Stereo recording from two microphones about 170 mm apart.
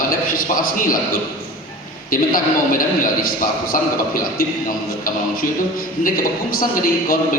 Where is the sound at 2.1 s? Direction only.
55° left (ahead or behind).